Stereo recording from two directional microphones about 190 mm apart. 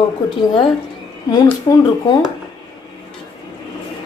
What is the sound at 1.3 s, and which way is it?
Speech, 20° left (ahead or behind).